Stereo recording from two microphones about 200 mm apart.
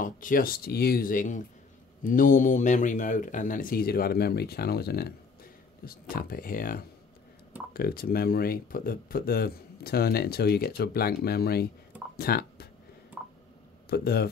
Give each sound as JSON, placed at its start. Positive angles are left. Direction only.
{"t": 0.0, "sound": "speech", "side_deg": 45}
{"t": 13.8, "sound": "speech", "side_deg": 50}